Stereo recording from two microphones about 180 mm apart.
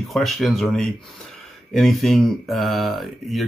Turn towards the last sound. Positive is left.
turn(degrees=0)  # may be behind; listen again after turning